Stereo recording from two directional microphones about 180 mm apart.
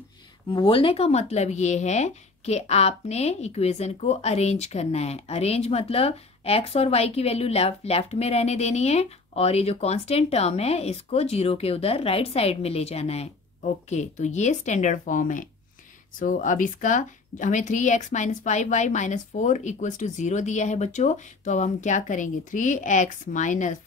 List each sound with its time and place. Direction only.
0.5 s speech: 30° left (ahead or behind); by 23.8 s 45° left (ahead or behind)